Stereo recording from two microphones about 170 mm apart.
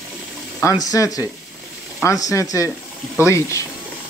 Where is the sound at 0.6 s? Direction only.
20° left (ahead or behind).